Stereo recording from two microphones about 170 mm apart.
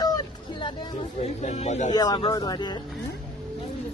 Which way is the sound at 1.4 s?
40° left (ahead or behind).